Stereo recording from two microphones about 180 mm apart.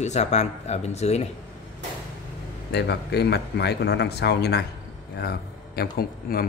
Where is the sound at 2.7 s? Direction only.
70° left (ahead or behind).